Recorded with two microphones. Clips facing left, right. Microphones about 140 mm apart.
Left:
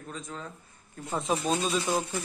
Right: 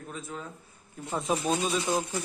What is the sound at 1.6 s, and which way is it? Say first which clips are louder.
Speech: even; 20° right (ahead or behind).